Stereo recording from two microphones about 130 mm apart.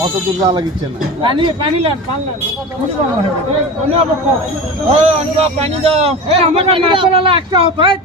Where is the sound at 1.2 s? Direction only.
40° right (ahead or behind).